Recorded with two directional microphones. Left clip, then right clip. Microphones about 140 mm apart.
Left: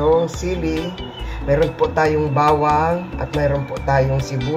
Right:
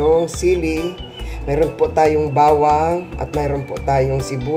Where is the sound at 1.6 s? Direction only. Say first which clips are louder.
Right 2 dB; centre (ahead or behind).